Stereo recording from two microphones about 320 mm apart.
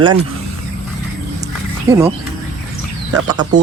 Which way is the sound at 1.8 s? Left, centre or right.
Centre.